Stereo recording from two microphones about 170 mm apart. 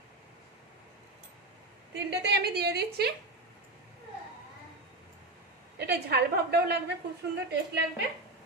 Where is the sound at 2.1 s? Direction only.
75° right (ahead or behind).